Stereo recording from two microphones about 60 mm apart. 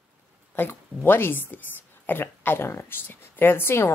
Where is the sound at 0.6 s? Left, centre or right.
Left.